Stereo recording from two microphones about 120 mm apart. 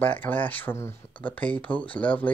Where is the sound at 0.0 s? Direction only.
15° left (ahead or behind).